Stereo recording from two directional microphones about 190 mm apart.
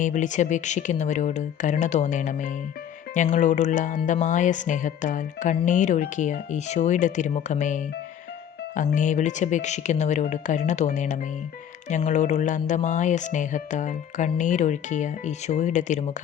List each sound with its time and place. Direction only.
0.0 s speech: 40° left (ahead or behind)